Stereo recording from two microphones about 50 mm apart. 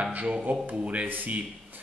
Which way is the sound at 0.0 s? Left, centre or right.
Right.